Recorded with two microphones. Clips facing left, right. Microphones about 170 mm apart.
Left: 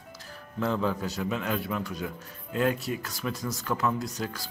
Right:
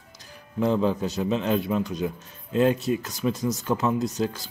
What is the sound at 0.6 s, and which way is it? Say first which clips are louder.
A man's voice: right 5 dB; 20° right (ahead or behind).